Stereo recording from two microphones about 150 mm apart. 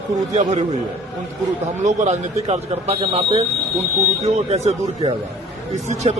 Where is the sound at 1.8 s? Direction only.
50° right (ahead or behind).